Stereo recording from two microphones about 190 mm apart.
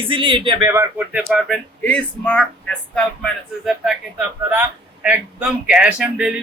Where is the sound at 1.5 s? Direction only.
5° left (ahead or behind).